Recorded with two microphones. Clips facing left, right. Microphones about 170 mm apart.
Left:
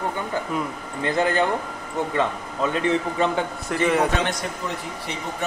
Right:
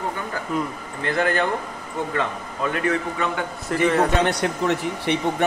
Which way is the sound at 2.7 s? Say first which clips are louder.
Left 1 dB; 25° left (ahead or behind).